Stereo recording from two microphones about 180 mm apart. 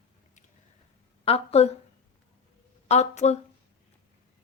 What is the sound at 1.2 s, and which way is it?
Speech, 35° left (ahead or behind).